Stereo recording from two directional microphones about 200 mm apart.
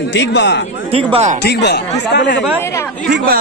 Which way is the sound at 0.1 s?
60° left (ahead or behind).